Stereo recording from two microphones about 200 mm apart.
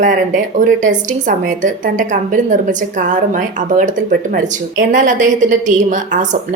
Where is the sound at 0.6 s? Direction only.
40° right (ahead or behind).